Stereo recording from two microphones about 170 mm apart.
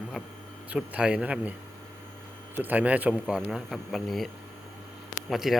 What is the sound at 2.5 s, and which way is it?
Speech, 10° right (ahead or behind).